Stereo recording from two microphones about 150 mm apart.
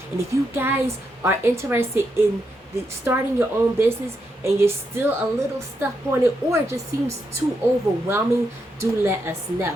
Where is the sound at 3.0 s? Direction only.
15° right (ahead or behind).